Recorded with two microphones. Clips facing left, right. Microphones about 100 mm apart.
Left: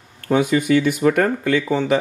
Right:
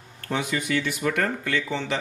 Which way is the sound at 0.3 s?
50° left (ahead or behind).